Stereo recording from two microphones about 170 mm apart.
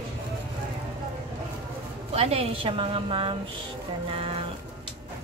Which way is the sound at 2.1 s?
35° right (ahead or behind).